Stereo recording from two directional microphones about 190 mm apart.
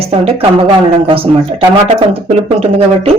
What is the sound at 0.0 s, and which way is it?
Speech, 30° right (ahead or behind).